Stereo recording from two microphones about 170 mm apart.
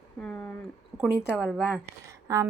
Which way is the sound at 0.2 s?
5° left (ahead or behind).